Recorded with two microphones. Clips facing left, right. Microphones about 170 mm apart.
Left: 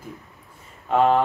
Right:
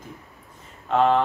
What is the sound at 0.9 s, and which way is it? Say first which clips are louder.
Speech: left 1 dB; 5° left (ahead or behind).